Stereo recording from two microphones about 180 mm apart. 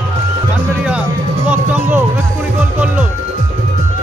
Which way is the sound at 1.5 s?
10° right (ahead or behind).